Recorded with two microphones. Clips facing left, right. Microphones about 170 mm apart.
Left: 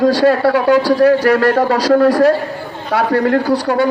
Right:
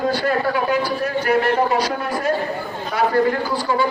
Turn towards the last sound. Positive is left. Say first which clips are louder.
# left 7 dB
turn(degrees=70)  # may be behind; listen again after turning